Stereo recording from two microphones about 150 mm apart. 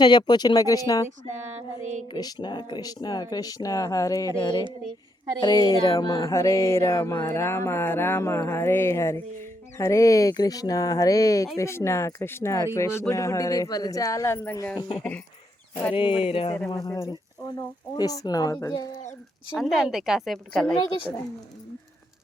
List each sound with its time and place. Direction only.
0.0 s speech: 30° left (ahead or behind)
2.1 s speech: 25° left (ahead or behind)
5.4 s a sound: 25° left (ahead or behind)
9.7 s speech: 20° left (ahead or behind)
14.8 s speech: 30° left (ahead or behind)
16.6 s speech: 20° left (ahead or behind)
19.5 s speech: centre (ahead or behind)